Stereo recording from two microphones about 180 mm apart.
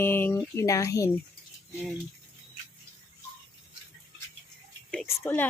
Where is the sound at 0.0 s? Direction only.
10° left (ahead or behind).